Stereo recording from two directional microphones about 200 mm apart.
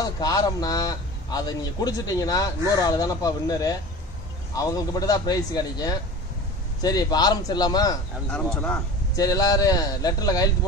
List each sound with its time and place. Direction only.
0.0 s a man's voice: 20° left (ahead or behind)
8.3 s a man's voice: 5° left (ahead or behind)
9.1 s a man's voice: 20° left (ahead or behind)